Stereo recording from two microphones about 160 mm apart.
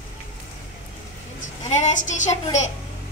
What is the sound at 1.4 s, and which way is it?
A woman's voice, 50° left (ahead or behind).